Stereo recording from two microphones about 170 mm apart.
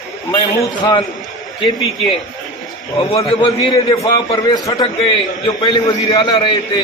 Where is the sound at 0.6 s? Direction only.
25° left (ahead or behind).